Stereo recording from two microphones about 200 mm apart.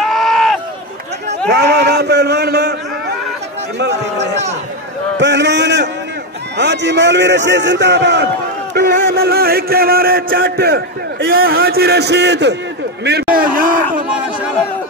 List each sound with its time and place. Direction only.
0.0 s run: centre (ahead or behind)
1.5 s a man's voice: 55° right (ahead or behind)
3.8 s a man's voice: 60° right (ahead or behind)
8.7 s music: 50° right (ahead or behind)
13.0 s a sound: 50° right (ahead or behind)